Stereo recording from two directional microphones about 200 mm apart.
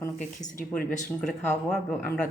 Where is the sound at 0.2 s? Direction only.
40° left (ahead or behind).